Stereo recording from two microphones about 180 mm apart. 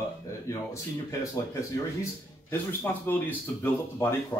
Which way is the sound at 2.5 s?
10° left (ahead or behind).